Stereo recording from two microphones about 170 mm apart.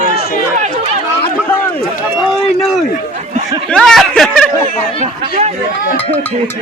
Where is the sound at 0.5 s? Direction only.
45° right (ahead or behind).